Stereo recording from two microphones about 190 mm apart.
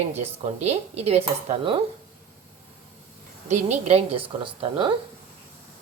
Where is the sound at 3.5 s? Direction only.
35° right (ahead or behind).